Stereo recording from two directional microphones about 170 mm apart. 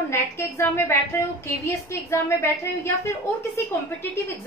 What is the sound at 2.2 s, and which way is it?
A woman's voice, 15° left (ahead or behind).